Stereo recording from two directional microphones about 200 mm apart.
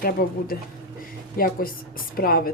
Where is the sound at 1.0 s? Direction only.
45° left (ahead or behind).